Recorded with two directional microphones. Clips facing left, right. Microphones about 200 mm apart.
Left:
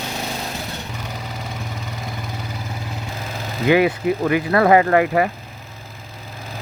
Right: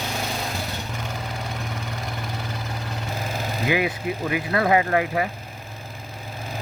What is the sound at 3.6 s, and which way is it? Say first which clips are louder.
Speech: left 8 dB; 55° left (ahead or behind).